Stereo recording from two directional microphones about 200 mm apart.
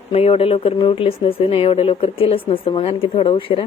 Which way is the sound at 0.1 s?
30° left (ahead or behind).